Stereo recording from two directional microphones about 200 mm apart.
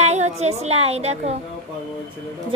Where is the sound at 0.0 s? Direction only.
35° right (ahead or behind).